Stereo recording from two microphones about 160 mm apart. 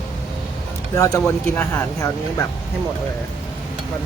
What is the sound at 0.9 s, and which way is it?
Speech, 15° left (ahead or behind).